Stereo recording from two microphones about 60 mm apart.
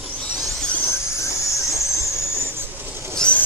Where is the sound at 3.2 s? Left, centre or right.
Centre.